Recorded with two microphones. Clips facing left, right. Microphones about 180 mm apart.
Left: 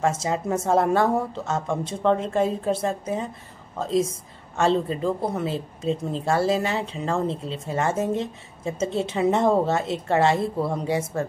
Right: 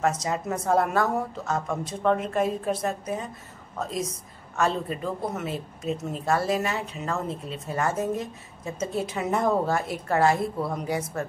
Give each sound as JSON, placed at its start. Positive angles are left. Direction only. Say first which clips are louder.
{"t": 0.0, "sound": "a woman's voice", "louder": "left 2 dB", "side_deg": 25}